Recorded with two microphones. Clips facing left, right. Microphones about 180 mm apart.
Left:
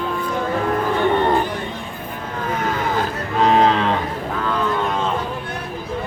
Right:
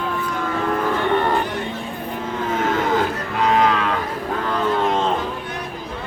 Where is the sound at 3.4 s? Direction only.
30° left (ahead or behind).